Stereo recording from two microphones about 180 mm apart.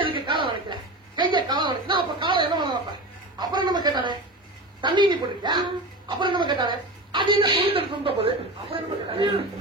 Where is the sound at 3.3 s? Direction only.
25° right (ahead or behind).